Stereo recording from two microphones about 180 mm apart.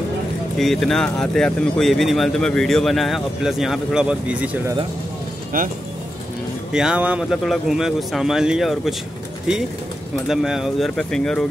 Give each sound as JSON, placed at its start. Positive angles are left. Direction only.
{"t": 0.6, "sound": "speech", "side_deg": 0}
{"t": 5.5, "sound": "speech", "side_deg": -50}
{"t": 6.7, "sound": "speech", "side_deg": -5}
{"t": 10.2, "sound": "speech", "side_deg": 0}